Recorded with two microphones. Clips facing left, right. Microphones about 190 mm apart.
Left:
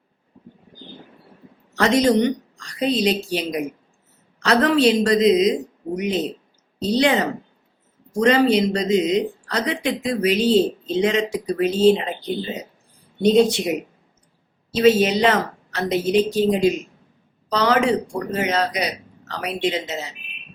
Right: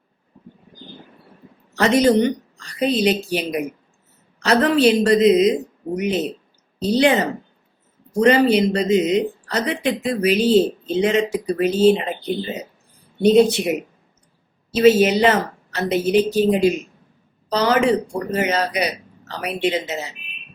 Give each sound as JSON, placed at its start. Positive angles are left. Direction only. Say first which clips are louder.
{"t": 1.7, "sound": "a woman's voice", "louder": "right 2 dB", "side_deg": -5}
{"t": 4.4, "sound": "speech", "louder": "right 1 dB", "side_deg": -5}
{"t": 14.8, "sound": "speech", "louder": "right 2 dB", "side_deg": -5}